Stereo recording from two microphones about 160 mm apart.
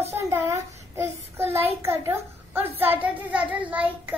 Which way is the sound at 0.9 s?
15° right (ahead or behind).